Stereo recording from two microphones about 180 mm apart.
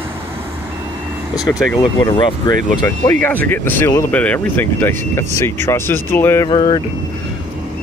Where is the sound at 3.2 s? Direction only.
10° left (ahead or behind).